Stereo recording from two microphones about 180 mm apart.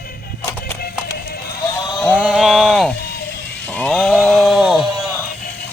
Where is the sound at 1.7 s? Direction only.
25° left (ahead or behind).